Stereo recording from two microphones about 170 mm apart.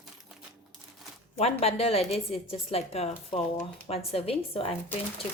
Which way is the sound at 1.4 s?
40° left (ahead or behind).